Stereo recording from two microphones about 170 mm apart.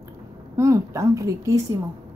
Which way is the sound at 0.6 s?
15° right (ahead or behind).